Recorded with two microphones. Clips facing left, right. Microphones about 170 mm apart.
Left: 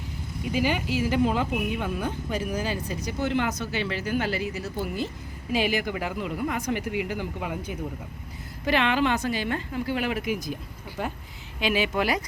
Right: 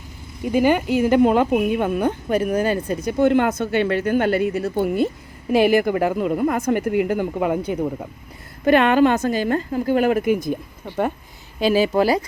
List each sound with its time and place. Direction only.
0.4 s a woman's voice: 50° right (ahead or behind)
8.6 s a woman's voice: 50° right (ahead or behind)
11.6 s speech: 35° right (ahead or behind)